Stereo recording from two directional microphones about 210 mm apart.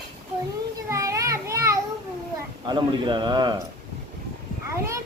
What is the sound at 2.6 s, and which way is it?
Speech, 20° right (ahead or behind).